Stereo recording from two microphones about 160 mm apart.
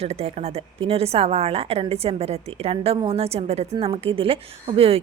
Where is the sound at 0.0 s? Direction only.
40° right (ahead or behind).